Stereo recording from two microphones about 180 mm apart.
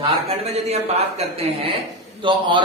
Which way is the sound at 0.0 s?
35° right (ahead or behind).